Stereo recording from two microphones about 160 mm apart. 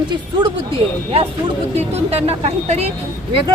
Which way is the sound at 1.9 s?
40° right (ahead or behind).